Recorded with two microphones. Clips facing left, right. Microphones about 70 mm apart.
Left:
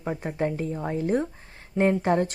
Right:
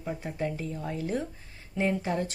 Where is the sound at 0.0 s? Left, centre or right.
Left.